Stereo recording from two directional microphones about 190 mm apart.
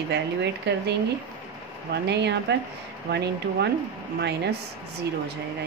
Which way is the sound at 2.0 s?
60° right (ahead or behind).